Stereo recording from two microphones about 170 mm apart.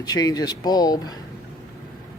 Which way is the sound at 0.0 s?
20° left (ahead or behind).